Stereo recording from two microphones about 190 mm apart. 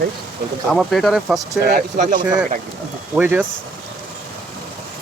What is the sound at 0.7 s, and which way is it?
Speech, centre (ahead or behind).